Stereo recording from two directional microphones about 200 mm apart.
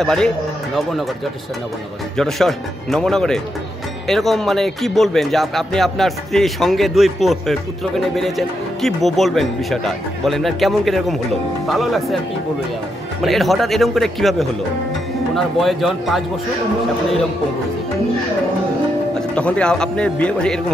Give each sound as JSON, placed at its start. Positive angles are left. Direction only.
{"t": 0.0, "sound": "a man's voice", "side_deg": 5}
{"t": 2.1, "sound": "a man's voice", "side_deg": 0}
{"t": 13.2, "sound": "a man's voice", "side_deg": 0}
{"t": 19.1, "sound": "a man's voice", "side_deg": 5}